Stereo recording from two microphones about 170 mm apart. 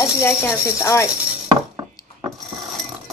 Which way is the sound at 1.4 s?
20° right (ahead or behind).